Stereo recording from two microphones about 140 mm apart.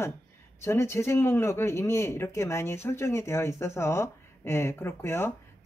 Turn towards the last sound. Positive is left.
turn(degrees=20)  # may be behind; listen again after turning